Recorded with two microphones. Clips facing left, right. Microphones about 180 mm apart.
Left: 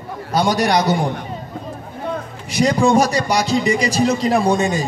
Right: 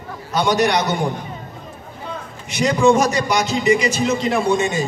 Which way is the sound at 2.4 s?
35° left (ahead or behind).